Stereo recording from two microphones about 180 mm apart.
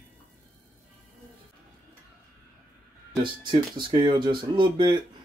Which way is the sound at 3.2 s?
25° right (ahead or behind).